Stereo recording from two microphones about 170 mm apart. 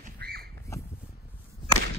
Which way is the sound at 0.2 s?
65° right (ahead or behind).